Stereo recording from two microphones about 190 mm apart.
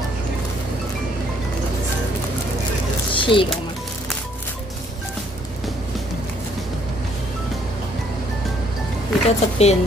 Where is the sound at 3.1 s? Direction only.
25° left (ahead or behind).